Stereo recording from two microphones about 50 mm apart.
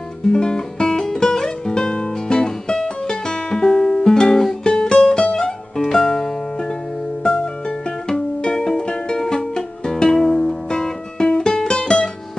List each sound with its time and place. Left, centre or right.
0.3 s music: centre